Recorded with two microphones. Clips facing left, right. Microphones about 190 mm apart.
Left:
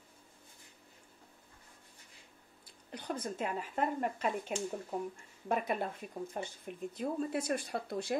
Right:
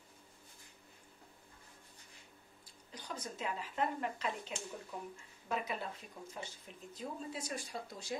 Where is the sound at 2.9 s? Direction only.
55° left (ahead or behind).